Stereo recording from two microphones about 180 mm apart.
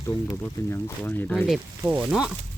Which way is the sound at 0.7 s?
10° left (ahead or behind).